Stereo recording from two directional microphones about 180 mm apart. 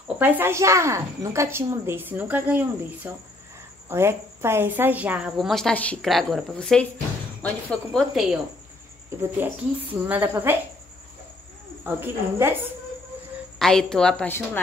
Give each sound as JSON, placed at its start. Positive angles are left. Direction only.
{"t": 0.2, "sound": "a woman's voice", "side_deg": -10}
{"t": 9.1, "sound": "a woman's voice", "side_deg": -15}
{"t": 11.8, "sound": "a woman's voice", "side_deg": -10}
{"t": 13.6, "sound": "a woman's voice", "side_deg": 5}